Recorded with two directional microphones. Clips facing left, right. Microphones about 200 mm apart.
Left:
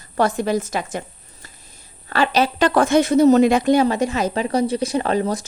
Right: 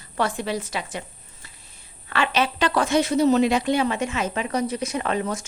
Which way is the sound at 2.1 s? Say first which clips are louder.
Left 5 dB; 40° left (ahead or behind).